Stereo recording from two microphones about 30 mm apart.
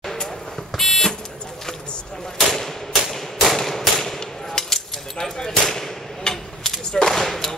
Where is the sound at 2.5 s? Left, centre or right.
Centre.